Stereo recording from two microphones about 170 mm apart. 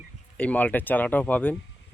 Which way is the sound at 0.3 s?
10° left (ahead or behind).